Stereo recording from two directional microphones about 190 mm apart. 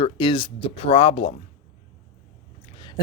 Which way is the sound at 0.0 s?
25° left (ahead or behind).